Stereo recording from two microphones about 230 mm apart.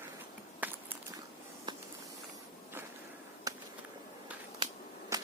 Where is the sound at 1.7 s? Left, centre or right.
Centre.